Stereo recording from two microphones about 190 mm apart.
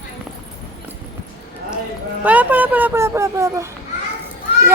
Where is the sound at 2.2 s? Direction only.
10° right (ahead or behind).